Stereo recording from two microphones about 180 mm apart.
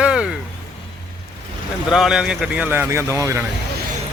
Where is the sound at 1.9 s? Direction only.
5° right (ahead or behind).